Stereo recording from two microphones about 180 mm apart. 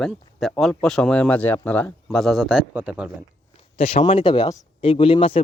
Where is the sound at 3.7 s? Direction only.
35° left (ahead or behind).